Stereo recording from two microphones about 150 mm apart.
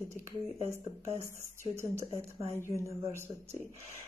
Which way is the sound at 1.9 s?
15° right (ahead or behind).